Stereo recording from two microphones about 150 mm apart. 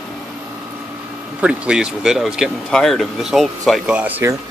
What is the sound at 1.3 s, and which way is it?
Speech, 5° right (ahead or behind).